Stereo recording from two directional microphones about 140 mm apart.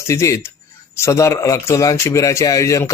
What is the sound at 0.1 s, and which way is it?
A man's voice, 20° left (ahead or behind).